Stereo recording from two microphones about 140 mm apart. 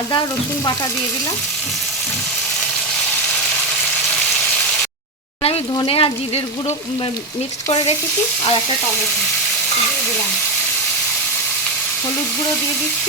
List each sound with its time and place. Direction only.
5.7 s frying: 40° left (ahead or behind)